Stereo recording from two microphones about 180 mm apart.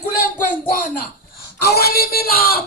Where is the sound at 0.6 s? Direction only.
50° left (ahead or behind).